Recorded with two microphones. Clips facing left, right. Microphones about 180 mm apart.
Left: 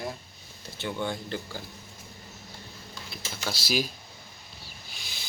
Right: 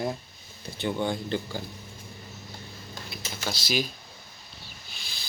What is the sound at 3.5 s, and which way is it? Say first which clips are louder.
Speech: even; 5° left (ahead or behind).